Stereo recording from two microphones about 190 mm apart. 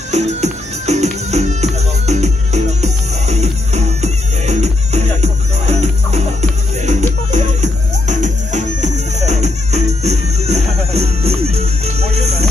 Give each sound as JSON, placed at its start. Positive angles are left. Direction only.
{"t": 0.1, "sound": "music", "side_deg": -35}